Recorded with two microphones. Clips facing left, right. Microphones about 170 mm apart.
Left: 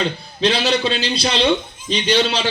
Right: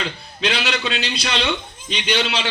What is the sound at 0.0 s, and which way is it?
A man's voice, 35° left (ahead or behind).